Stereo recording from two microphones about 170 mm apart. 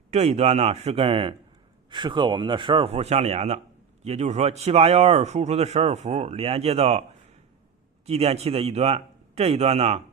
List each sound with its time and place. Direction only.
0.1 s a man's voice: 40° right (ahead or behind)
8.0 s speech: 35° right (ahead or behind)